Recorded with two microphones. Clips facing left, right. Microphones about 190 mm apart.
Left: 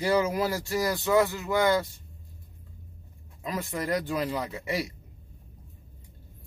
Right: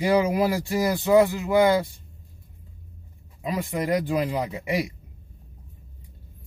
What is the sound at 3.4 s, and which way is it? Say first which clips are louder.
Speech: right 5 dB; 15° right (ahead or behind).